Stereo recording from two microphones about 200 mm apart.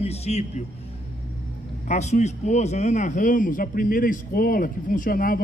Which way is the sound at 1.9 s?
35° left (ahead or behind).